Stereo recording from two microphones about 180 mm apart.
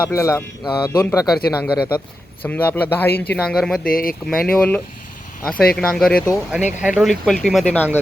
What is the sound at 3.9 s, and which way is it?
Speech, 50° left (ahead or behind).